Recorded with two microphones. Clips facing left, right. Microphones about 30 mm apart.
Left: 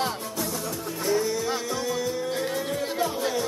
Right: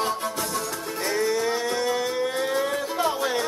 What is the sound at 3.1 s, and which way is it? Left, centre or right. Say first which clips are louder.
Music: right 3 dB; right.